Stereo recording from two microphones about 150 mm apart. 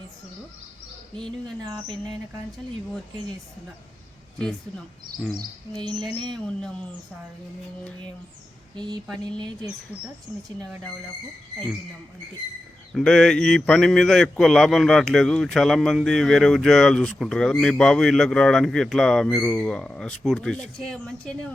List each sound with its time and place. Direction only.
6.3 s a man's voice: 5° left (ahead or behind)
8.7 s speech: 30° right (ahead or behind)
12.9 s a man's voice: 5° left (ahead or behind)